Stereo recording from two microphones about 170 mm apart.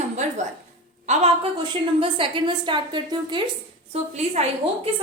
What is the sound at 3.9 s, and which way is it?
Speech, 40° right (ahead or behind).